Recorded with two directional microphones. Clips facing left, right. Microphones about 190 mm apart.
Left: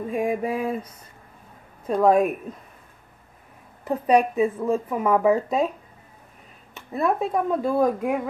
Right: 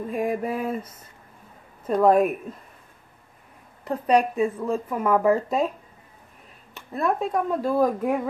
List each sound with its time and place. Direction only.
0.1 s speech: centre (ahead or behind)
3.8 s speech: centre (ahead or behind)
6.7 s speech: centre (ahead or behind)